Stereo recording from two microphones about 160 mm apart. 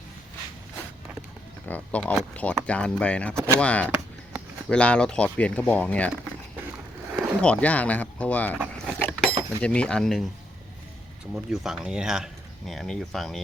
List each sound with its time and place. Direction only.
1.6 s speech: 10° left (ahead or behind)
3.3 s speech: 15° right (ahead or behind)
3.6 s speech: 10° left (ahead or behind)
7.1 s a sound: 10° right (ahead or behind)
7.4 s speech: 10° left (ahead or behind)
8.5 s a sound: 10° right (ahead or behind)
9.0 s a sound: 10° left (ahead or behind)
9.6 s speech: 5° left (ahead or behind)
11.3 s speech: 5° right (ahead or behind)